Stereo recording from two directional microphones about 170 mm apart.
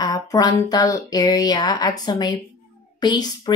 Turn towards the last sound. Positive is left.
turn(degrees=25)  # may be behind; listen again after turning